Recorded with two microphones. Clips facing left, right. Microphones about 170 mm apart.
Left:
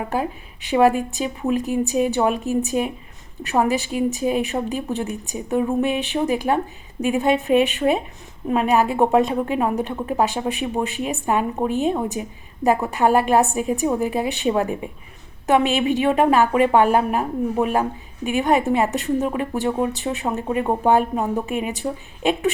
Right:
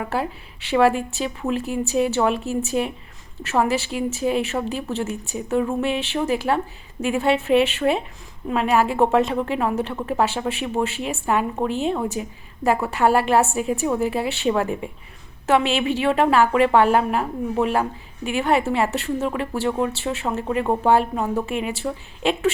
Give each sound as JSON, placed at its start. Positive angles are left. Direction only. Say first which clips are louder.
{"t": 0.0, "sound": "a woman's voice", "louder": "left 1 dB", "side_deg": 15}